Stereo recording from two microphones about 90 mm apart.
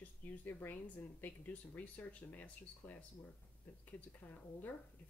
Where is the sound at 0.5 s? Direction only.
25° left (ahead or behind).